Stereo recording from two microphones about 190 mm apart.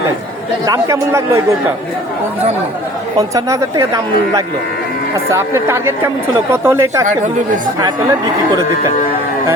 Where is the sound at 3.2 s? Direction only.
15° right (ahead or behind).